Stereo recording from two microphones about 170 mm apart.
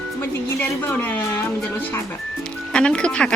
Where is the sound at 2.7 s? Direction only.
5° left (ahead or behind).